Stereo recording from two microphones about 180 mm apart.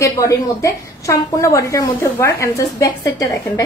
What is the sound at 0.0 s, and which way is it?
A woman's voice, 15° left (ahead or behind).